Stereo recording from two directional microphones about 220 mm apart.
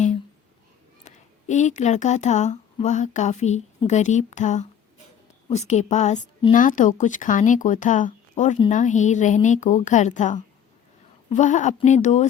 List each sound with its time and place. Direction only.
1.0 s speech: 35° left (ahead or behind)